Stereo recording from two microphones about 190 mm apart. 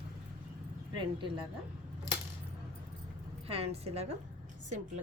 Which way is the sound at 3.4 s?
30° right (ahead or behind).